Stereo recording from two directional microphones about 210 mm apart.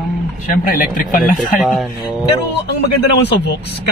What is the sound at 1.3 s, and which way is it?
Speech, centre (ahead or behind).